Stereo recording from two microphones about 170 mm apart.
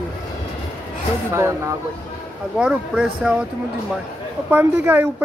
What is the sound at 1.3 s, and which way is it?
Speech, 15° right (ahead or behind).